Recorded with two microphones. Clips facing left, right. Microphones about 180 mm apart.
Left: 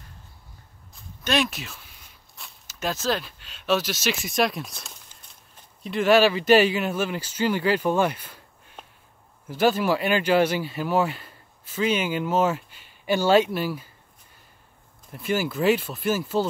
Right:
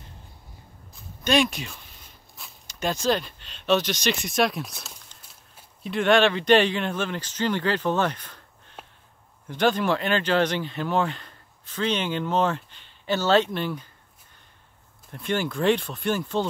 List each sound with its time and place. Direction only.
0.9 s a sound: centre (ahead or behind)
2.3 s speech: centre (ahead or behind)
15.0 s speech: 5° left (ahead or behind)